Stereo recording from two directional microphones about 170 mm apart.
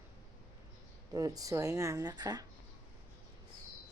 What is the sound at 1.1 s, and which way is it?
Speech, 20° right (ahead or behind).